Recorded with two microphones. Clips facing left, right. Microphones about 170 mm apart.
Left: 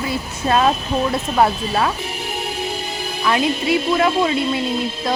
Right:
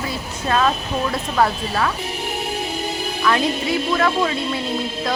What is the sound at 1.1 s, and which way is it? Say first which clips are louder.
Speech: left 1 dB; 25° left (ahead or behind).